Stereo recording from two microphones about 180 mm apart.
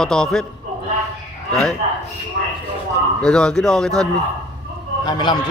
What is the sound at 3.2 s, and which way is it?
Speech, 5° left (ahead or behind).